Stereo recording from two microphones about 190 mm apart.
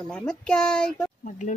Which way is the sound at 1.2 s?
40° left (ahead or behind).